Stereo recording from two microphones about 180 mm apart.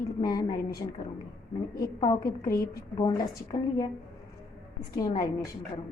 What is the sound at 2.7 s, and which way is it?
Speech, 20° left (ahead or behind).